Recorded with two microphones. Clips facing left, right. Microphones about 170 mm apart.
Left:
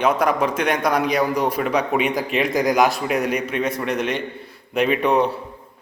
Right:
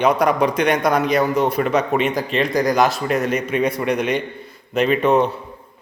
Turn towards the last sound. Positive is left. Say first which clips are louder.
# right 2 dB
turn(degrees=-5)  # may be behind; listen again after turning